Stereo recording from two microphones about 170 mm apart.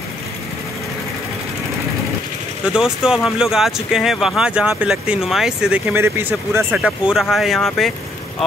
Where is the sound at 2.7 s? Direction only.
5° right (ahead or behind).